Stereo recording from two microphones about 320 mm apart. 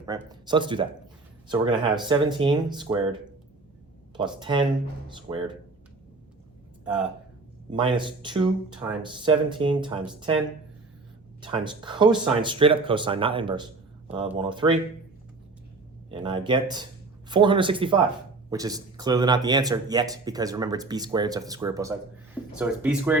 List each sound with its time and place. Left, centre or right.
0.0 s speech: centre
4.2 s speech: centre
6.8 s speech: centre
7.7 s speech: centre
16.0 s speech: centre